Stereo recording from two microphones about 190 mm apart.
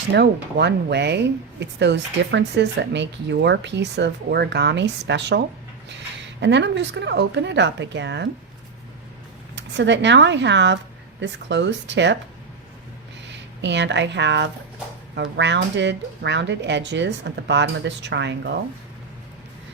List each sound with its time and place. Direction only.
0.1 s speech: 60° right (ahead or behind)
6.4 s speech: 70° right (ahead or behind)
9.6 s speech: 65° right (ahead or behind)
13.3 s speech: 70° right (ahead or behind)